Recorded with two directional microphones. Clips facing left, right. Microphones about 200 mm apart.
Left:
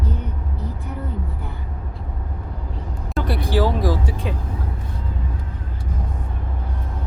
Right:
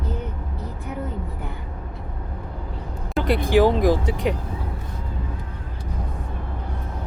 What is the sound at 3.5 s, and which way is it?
Speech, 20° right (ahead or behind).